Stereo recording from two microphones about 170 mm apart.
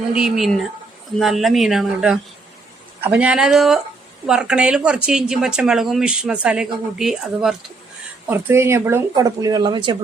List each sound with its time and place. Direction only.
0.1 s speech: 5° right (ahead or behind)
8.3 s speech: 15° right (ahead or behind)